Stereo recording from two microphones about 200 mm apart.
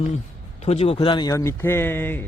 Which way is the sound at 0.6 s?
30° left (ahead or behind).